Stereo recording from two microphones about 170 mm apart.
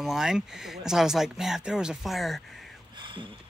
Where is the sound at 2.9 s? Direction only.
30° right (ahead or behind).